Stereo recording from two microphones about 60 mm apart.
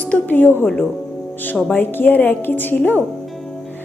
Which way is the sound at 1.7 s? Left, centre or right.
Left.